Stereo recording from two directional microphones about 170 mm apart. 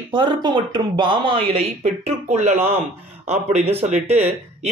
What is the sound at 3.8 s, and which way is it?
Speech, 40° right (ahead or behind).